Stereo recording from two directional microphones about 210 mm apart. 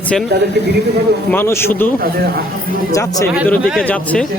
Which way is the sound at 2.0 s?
45° right (ahead or behind).